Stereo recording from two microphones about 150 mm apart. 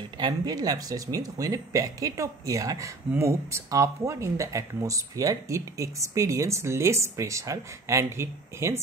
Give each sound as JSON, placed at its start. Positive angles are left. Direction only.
{"t": 0.2, "sound": "speech", "side_deg": -25}